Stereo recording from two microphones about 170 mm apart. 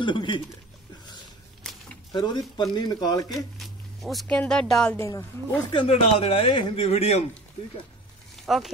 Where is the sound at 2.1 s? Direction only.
25° left (ahead or behind).